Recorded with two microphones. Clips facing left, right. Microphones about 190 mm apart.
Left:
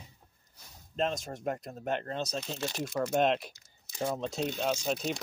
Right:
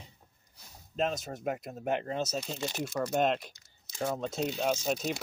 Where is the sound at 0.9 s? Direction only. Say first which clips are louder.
Even; 5° right (ahead or behind).